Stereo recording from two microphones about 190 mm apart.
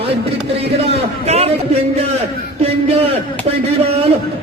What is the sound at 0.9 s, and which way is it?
Speech, 35° right (ahead or behind).